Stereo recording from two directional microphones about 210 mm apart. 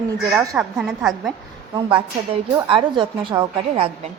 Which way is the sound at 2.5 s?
25° right (ahead or behind).